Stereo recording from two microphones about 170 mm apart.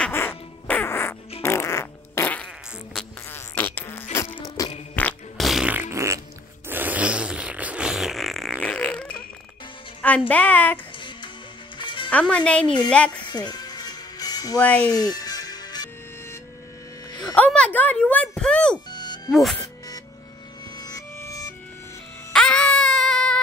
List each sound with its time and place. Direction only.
0.0 s music: 15° left (ahead or behind)
1.4 s fart: 15° left (ahead or behind)
3.3 s insect: 10° left (ahead or behind)
4.9 s fart: 5° left (ahead or behind)
10.0 s a woman's voice: 10° left (ahead or behind)
11.8 s music: 30° left (ahead or behind)
12.1 s a woman's voice: 10° left (ahead or behind)
13.3 s music: 25° left (ahead or behind)
14.6 s a woman's voice: 10° left (ahead or behind)
14.9 s music: 20° left (ahead or behind)
17.4 s music: 5° left (ahead or behind)
18.9 s music: 25° left (ahead or behind)
20.8 s music: 20° left (ahead or behind)
22.3 s baby cry: 5° left (ahead or behind)